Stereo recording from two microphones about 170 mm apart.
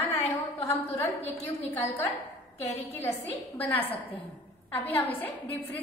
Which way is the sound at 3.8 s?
35° left (ahead or behind).